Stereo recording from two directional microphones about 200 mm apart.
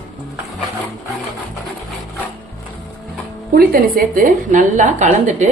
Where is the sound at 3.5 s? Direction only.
45° right (ahead or behind).